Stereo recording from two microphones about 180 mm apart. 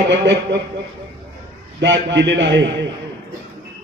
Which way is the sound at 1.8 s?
80° right.